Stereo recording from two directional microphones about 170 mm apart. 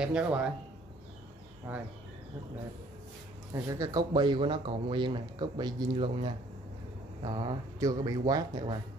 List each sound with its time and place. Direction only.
0.0 s speech: 5° right (ahead or behind)
3.5 s speech: 20° right (ahead or behind)